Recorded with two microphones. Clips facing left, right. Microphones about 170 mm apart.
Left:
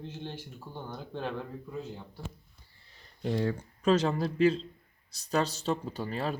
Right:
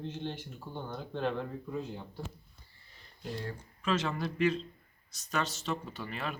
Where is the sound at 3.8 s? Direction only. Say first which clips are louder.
Left 6 dB; 35° left (ahead or behind).